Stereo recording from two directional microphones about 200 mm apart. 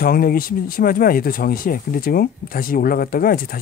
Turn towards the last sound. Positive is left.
turn(degrees=45)  # may be behind; listen again after turning